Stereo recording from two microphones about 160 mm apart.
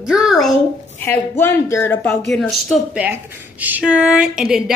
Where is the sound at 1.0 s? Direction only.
15° left (ahead or behind).